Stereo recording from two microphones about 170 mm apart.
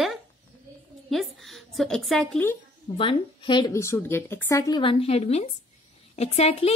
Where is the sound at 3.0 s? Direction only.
30° left (ahead or behind).